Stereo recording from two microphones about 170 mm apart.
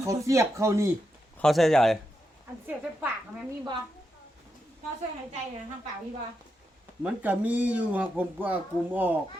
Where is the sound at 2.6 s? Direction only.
10° right (ahead or behind).